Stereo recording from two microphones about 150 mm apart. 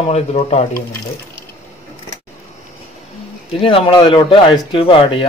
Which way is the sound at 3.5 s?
35° left (ahead or behind).